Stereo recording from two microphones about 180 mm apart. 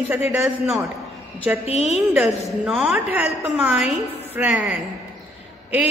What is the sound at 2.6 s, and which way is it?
A man's voice, 5° right (ahead or behind).